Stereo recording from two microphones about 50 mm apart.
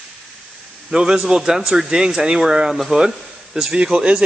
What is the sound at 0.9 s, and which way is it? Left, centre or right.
A man's voice, centre.